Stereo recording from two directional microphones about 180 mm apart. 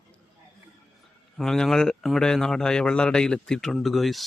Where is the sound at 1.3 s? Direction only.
5° left (ahead or behind).